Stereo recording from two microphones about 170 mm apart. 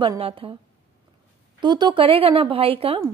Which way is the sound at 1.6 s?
25° right (ahead or behind).